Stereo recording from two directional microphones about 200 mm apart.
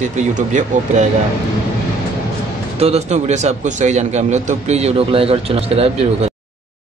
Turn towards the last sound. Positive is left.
turn(degrees=-30)  # may be behind; listen again after turning